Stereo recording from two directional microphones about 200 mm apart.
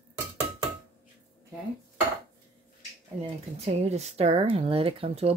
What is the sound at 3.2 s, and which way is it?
Speech, 30° right (ahead or behind).